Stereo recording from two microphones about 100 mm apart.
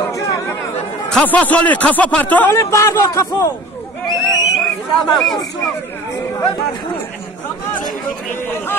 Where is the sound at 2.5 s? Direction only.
30° left (ahead or behind).